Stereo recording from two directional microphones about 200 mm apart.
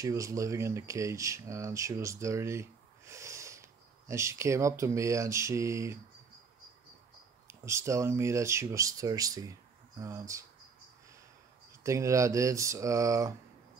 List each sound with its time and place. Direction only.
0.0 s speech: 15° right (ahead or behind)
3.1 s a sound: 15° right (ahead or behind)
4.1 s speech: 15° right (ahead or behind)
7.4 s speech: 15° right (ahead or behind)
11.8 s speech: 15° right (ahead or behind)